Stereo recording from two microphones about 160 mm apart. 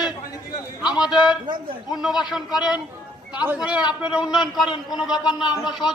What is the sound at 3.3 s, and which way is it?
A man's voice, 10° right (ahead or behind).